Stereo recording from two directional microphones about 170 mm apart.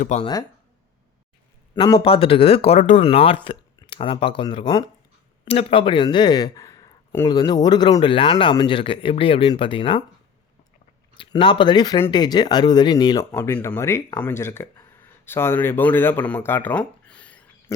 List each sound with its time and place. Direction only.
0.2 s speech: 25° left (ahead or behind)
1.7 s speech: 25° left (ahead or behind)
5.5 s speech: 35° left (ahead or behind)
11.2 s speech: 30° left (ahead or behind)
13.3 s speech: 15° left (ahead or behind)
17.7 s speech: 20° left (ahead or behind)